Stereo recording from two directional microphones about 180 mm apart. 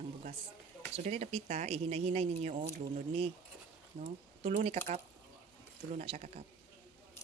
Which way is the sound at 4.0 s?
35° right (ahead or behind).